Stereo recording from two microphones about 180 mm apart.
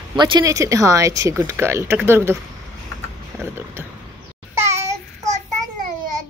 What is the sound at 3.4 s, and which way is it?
Speech, 15° right (ahead or behind).